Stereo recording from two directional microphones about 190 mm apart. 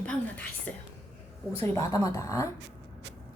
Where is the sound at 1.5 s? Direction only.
15° left (ahead or behind).